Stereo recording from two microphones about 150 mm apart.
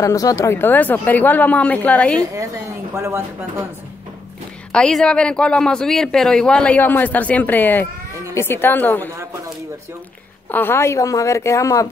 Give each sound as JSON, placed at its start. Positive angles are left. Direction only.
{"t": 0.0, "sound": "speech", "side_deg": 25}
{"t": 2.3, "sound": "speech", "side_deg": -20}
{"t": 4.7, "sound": "speech", "side_deg": 5}
{"t": 10.5, "sound": "a woman's voice", "side_deg": 15}